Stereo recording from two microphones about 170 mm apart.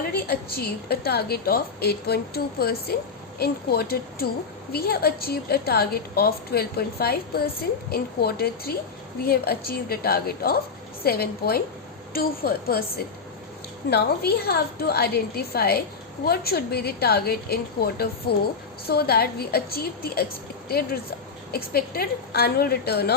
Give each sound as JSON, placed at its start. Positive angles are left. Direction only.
{"t": 0.1, "sound": "a woman's voice", "side_deg": 65}
{"t": 13.9, "sound": "a woman's voice", "side_deg": 70}